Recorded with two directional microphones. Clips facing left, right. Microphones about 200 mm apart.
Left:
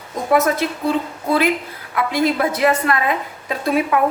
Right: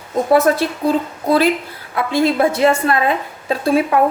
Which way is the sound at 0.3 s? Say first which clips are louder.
Right 3 dB; 30° right (ahead or behind).